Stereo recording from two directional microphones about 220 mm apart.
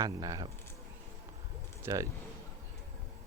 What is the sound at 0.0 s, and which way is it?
Speech, 15° right (ahead or behind).